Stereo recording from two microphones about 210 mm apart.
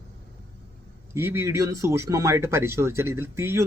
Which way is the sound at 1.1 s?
10° right (ahead or behind).